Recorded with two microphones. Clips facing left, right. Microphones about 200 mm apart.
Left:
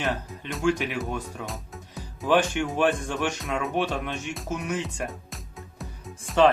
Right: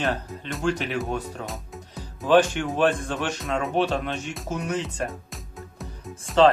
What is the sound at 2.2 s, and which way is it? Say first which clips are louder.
Speech: right 3 dB; 15° left (ahead or behind).